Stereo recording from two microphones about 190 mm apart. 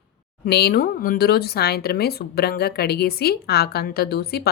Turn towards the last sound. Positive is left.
turn(degrees=55)  # may be behind; listen again after turning